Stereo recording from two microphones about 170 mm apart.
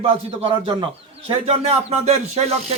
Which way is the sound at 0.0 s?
30° right (ahead or behind).